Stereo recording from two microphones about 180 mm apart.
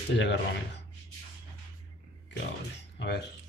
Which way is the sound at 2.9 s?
70° left (ahead or behind).